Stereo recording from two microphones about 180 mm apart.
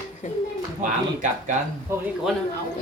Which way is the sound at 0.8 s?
45° right (ahead or behind).